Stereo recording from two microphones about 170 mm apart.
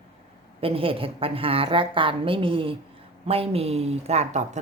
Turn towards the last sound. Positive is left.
turn(degrees=-40)  # may be behind; listen again after turning